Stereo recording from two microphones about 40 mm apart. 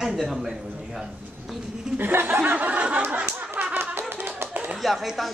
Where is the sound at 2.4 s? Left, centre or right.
Right.